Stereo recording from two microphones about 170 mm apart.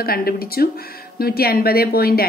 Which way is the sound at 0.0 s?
60° left (ahead or behind).